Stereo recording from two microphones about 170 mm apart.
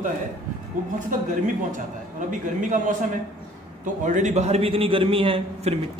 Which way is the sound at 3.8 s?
45° right (ahead or behind).